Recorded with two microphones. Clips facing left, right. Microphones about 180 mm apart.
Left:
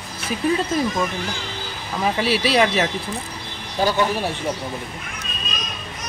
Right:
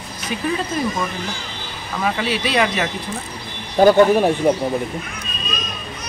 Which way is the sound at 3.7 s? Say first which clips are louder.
Right 9 dB; 50° right (ahead or behind).